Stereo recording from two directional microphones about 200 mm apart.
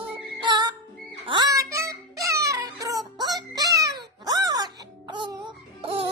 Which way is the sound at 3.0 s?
20° right (ahead or behind).